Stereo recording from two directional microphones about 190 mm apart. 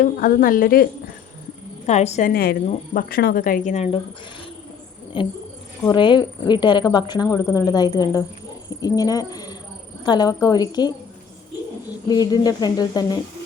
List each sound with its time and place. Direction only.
0.0 s speech: 45° left (ahead or behind)
1.9 s a woman's voice: 35° left (ahead or behind)
2.3 s speech: 50° left (ahead or behind)
5.2 s speech: 25° left (ahead or behind)
12.0 s speech: 20° left (ahead or behind)